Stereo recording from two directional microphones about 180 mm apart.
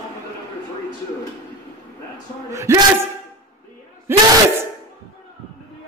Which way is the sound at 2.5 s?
15° right (ahead or behind).